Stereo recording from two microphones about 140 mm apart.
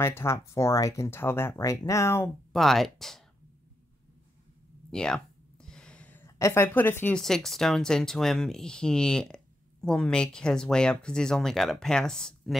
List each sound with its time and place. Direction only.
0.0 s speech: 20° left (ahead or behind)
2.5 s speech: centre (ahead or behind)
4.9 s a sound: 5° left (ahead or behind)
6.2 s a woman's voice: 20° left (ahead or behind)
7.2 s speech: 5° left (ahead or behind)